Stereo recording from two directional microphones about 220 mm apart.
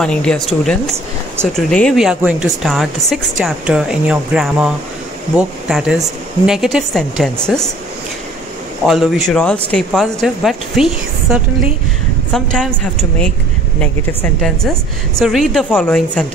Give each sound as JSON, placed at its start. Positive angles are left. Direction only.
{"t": 0.0, "sound": "speech", "side_deg": 5}
{"t": 1.4, "sound": "speech", "side_deg": 5}
{"t": 8.8, "sound": "speech", "side_deg": 0}
{"t": 14.4, "sound": "speech", "side_deg": 0}